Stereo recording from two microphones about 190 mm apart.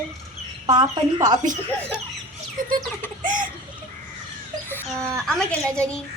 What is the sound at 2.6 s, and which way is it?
Speech, 45° right (ahead or behind).